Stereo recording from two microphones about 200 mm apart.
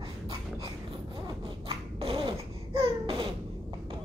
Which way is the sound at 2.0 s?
25° right (ahead or behind).